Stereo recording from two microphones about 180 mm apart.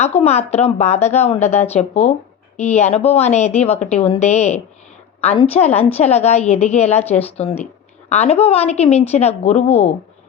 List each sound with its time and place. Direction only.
0.0 s a woman's voice: 35° left (ahead or behind)